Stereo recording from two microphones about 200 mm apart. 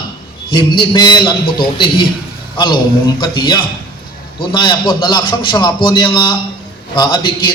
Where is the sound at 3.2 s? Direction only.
25° left (ahead or behind).